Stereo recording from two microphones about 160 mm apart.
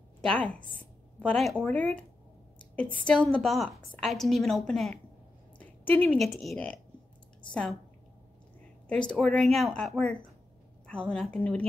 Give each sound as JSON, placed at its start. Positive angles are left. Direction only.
{"t": 0.2, "sound": "a woman's voice", "side_deg": 5}
{"t": 9.1, "sound": "a woman's voice", "side_deg": 5}